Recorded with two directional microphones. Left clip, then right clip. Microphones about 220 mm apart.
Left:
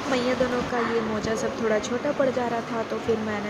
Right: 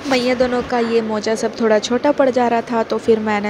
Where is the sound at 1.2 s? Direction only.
40° right (ahead or behind).